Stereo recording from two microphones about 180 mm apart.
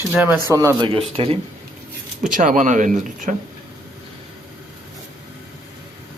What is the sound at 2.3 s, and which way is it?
Speech, 45° right (ahead or behind).